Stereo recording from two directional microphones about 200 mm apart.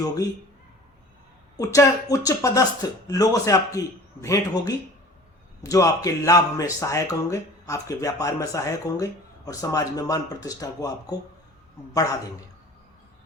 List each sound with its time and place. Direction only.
1.5 s speech: 15° left (ahead or behind)